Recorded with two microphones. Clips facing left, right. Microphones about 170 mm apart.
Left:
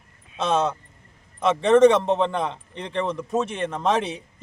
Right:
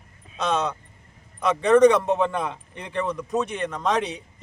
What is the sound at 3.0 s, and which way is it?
Speech, 25° left (ahead or behind).